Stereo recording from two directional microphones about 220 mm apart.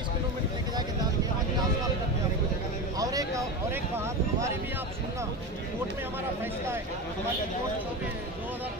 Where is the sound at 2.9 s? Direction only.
15° right (ahead or behind).